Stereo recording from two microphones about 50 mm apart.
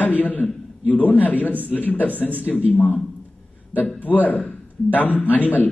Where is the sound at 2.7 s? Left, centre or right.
Left.